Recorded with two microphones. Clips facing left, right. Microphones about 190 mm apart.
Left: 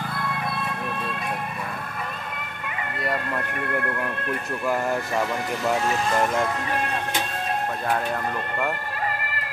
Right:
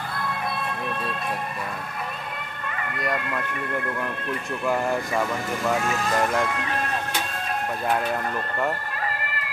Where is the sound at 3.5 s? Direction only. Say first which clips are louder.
Left 2 dB; 55° left (ahead or behind).